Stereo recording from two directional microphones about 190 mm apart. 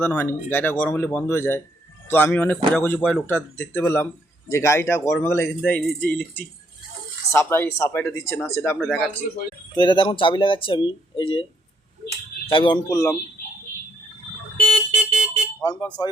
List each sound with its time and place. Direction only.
0.0 s speech: 10° left (ahead or behind)
8.8 s speech: centre (ahead or behind)
9.7 s speech: 25° left (ahead or behind)
12.5 s speech: 25° left (ahead or behind)
14.7 s car alarm: 5° right (ahead or behind)